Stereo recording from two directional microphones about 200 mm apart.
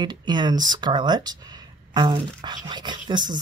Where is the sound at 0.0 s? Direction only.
20° right (ahead or behind).